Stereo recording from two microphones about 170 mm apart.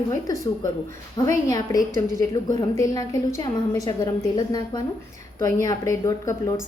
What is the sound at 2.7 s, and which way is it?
Speech, 20° left (ahead or behind).